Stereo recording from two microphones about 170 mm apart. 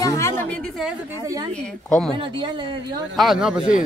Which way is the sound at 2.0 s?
30° right (ahead or behind).